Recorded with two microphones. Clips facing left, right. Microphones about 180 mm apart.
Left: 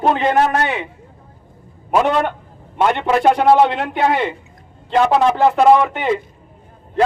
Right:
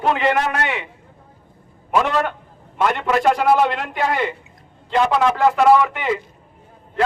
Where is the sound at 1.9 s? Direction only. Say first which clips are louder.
Left 3 dB; 40° left (ahead or behind).